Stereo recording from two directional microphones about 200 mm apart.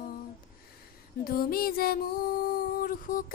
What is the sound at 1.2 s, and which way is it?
Music, 50° left (ahead or behind).